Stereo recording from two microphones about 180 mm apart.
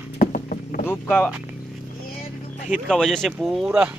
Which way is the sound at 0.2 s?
50° left (ahead or behind).